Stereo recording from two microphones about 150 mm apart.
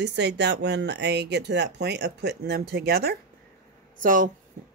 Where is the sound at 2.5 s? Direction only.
90° right.